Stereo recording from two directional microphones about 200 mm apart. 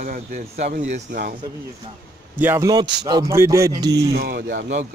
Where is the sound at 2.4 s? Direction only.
10° right (ahead or behind).